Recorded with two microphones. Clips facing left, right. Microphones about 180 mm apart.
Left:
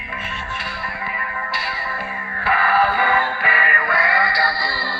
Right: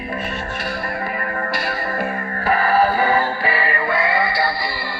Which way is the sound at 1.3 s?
45° right (ahead or behind).